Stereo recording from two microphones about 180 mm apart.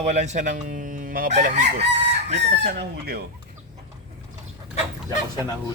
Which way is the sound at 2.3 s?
70° right (ahead or behind).